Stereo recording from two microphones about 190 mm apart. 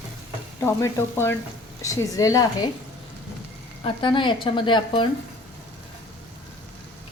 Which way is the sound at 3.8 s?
25° left (ahead or behind).